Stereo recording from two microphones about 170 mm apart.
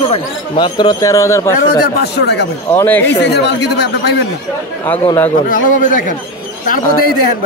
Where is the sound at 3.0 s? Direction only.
90° left.